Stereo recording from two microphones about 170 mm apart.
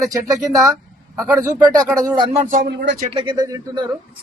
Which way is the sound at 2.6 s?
85° right.